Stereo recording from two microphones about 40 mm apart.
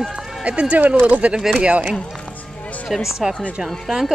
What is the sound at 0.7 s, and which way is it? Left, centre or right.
Speech, right.